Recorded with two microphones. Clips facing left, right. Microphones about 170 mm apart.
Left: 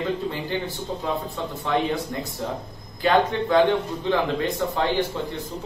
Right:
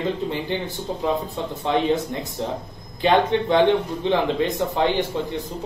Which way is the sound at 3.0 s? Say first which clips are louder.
Right 2 dB; 20° right (ahead or behind).